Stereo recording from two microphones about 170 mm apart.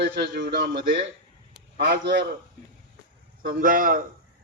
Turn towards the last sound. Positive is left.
turn(degrees=-55)  # may be behind; listen again after turning